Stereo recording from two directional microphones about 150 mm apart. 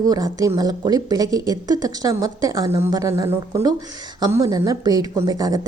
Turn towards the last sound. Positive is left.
turn(degrees=-25)  # may be behind; listen again after turning